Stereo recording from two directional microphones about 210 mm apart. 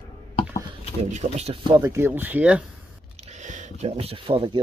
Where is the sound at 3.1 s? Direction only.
30° right (ahead or behind).